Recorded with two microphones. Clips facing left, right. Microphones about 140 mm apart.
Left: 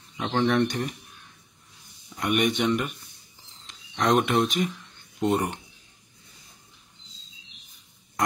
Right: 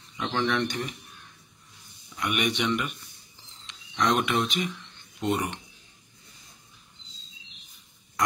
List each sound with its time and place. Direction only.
0.2 s speech: 40° left (ahead or behind)
2.1 s speech: 45° left (ahead or behind)
3.9 s speech: 50° left (ahead or behind)